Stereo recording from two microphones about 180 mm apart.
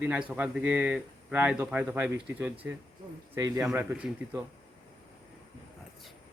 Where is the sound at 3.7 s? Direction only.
5° right (ahead or behind).